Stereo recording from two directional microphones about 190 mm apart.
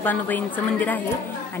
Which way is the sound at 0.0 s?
10° left (ahead or behind).